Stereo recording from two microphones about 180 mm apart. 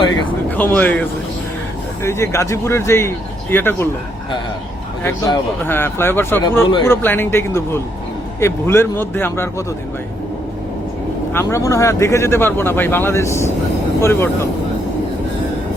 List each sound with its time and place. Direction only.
0.5 s speech: 10° left (ahead or behind)
2.0 s speech: 15° left (ahead or behind)
5.0 s speech: 15° left (ahead or behind)
11.3 s speech: 15° left (ahead or behind)